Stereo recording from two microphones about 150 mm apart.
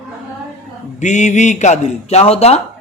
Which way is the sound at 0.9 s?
50° left (ahead or behind).